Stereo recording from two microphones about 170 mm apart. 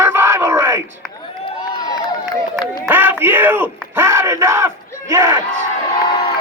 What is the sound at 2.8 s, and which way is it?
A man's voice, 10° right (ahead or behind).